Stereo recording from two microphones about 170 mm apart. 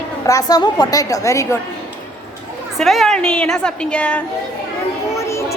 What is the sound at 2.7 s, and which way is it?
A woman's voice, centre (ahead or behind).